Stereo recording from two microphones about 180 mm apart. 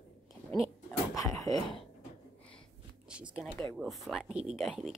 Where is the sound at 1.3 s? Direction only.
Centre (ahead or behind).